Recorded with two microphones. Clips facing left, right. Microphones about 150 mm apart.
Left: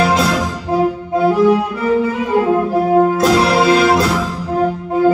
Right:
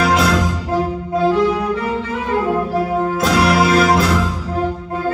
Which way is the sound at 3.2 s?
30° left (ahead or behind).